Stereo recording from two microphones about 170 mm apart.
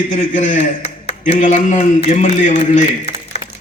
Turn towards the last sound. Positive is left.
turn(degrees=45)  # may be behind; listen again after turning